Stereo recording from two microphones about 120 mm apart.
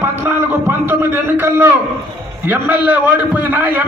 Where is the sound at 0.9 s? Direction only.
20° right (ahead or behind).